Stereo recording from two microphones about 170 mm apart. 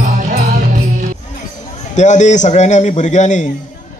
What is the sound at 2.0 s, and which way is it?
A man's voice, 45° left (ahead or behind).